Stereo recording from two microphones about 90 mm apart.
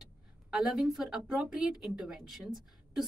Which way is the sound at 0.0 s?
5° right (ahead or behind).